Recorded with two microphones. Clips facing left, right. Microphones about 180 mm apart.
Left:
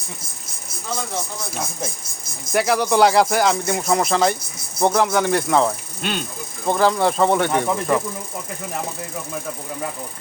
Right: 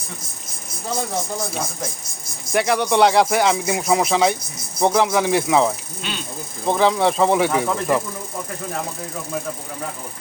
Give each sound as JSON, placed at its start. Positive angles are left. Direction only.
{"t": 2.5, "sound": "speech", "side_deg": 0}
{"t": 6.0, "sound": "speech", "side_deg": 55}
{"t": 6.7, "sound": "speech", "side_deg": 0}